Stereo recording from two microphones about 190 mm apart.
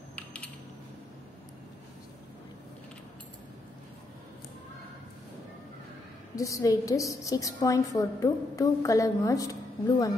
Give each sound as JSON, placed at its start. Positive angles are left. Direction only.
{"t": 6.3, "sound": "a woman's voice", "side_deg": 15}